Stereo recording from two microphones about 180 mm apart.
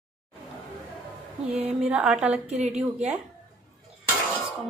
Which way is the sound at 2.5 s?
40° right (ahead or behind).